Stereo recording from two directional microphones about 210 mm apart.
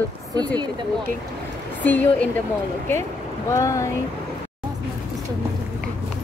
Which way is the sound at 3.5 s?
15° left (ahead or behind).